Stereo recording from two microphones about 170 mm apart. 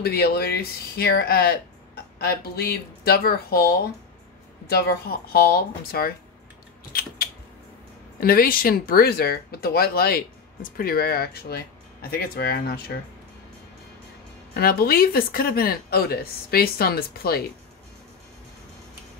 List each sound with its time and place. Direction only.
0.0 s speech: 65° left (ahead or behind)
6.9 s typing: 60° left (ahead or behind)
8.2 s speech: 60° left (ahead or behind)
14.5 s speech: 60° left (ahead or behind)